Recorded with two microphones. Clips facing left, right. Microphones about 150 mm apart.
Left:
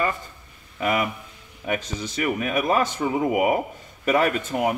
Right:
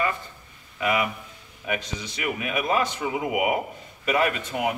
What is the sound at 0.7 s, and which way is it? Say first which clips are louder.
A man's voice: left 1 dB; 45° left (ahead or behind).